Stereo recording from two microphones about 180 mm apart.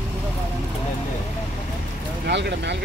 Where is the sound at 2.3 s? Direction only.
75° right (ahead or behind).